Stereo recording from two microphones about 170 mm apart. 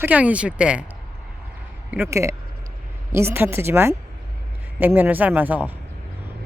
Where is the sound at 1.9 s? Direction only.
15° right (ahead or behind).